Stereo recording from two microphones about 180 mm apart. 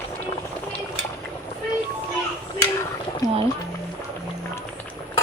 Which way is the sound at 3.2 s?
20° left (ahead or behind).